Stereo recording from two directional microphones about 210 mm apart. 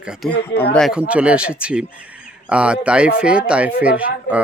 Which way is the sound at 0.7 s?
Centre (ahead or behind).